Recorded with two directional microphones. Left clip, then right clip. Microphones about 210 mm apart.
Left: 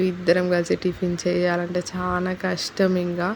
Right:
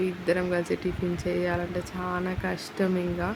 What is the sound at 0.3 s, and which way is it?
Speech, 20° left (ahead or behind).